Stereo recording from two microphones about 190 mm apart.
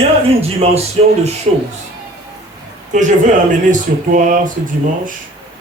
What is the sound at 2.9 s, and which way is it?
Speech, 40° right (ahead or behind).